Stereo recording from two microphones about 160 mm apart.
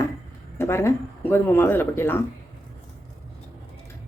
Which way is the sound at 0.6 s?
15° left (ahead or behind).